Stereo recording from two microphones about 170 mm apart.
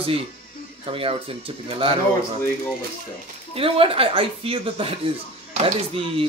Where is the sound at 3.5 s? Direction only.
35° right (ahead or behind).